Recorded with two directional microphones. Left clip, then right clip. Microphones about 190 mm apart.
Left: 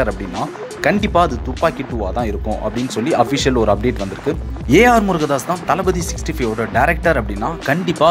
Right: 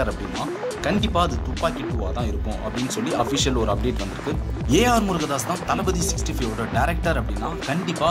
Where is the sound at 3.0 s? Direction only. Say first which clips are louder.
Left 8 dB; 25° left (ahead or behind).